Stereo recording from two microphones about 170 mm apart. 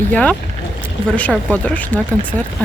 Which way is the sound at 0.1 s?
5° left (ahead or behind).